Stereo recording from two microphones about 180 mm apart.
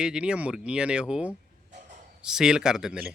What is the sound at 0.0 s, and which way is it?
A man's voice, 5° right (ahead or behind).